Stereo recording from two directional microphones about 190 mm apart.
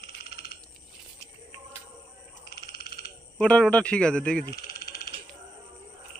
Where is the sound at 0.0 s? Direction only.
55° left (ahead or behind).